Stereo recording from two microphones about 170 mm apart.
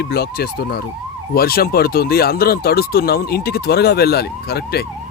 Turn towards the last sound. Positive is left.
turn(degrees=70)  # may be behind; listen again after turning